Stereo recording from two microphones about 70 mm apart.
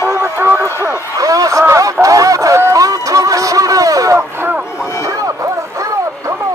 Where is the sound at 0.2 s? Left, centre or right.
Right.